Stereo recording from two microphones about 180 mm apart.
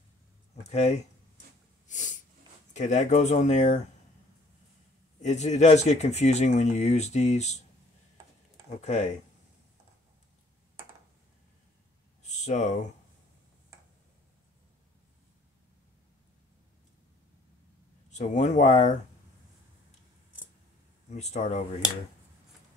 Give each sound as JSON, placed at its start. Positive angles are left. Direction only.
{"t": 0.7, "sound": "speech", "side_deg": 40}
{"t": 1.9, "sound": "snort", "side_deg": 45}
{"t": 2.7, "sound": "speech", "side_deg": 40}
{"t": 5.2, "sound": "speech", "side_deg": 40}
{"t": 12.2, "sound": "a sound", "side_deg": 40}
{"t": 18.1, "sound": "speech", "side_deg": 45}
{"t": 21.1, "sound": "speech", "side_deg": 40}